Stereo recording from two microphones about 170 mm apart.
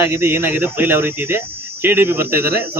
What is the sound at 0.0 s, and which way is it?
Speech, 15° right (ahead or behind).